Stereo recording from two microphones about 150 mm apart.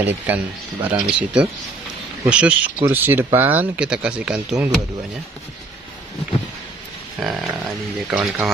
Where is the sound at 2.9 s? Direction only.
15° right (ahead or behind).